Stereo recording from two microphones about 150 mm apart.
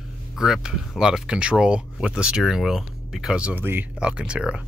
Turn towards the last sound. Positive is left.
turn(degrees=-5)  # may be behind; listen again after turning